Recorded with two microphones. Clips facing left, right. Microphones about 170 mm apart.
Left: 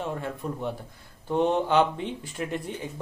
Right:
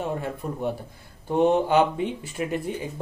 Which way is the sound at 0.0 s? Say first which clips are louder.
Right 2 dB; 10° right (ahead or behind).